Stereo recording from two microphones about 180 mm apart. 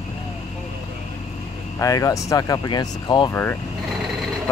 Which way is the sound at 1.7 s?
20° left (ahead or behind).